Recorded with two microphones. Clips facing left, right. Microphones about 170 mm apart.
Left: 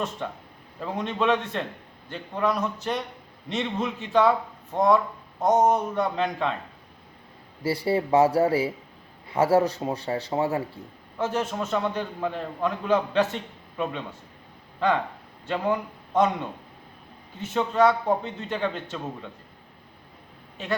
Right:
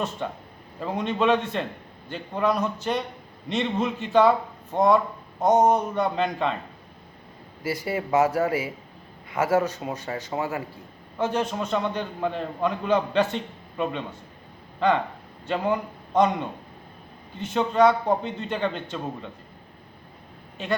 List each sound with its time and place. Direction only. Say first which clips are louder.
0.8 s a man's voice: right 2 dB; centre (ahead or behind)
7.6 s a man's voice: left 3 dB; 30° left (ahead or behind)
11.2 s a man's voice: right 1 dB; centre (ahead or behind)
15.4 s a man's voice: right 1 dB; centre (ahead or behind)
17.3 s a man's voice: right 2 dB; 5° left (ahead or behind)